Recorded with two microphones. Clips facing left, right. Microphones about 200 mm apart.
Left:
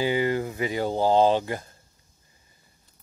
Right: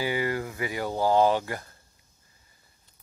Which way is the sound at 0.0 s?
25° left (ahead or behind).